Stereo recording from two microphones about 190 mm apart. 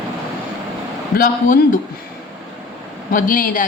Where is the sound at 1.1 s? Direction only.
50° left (ahead or behind).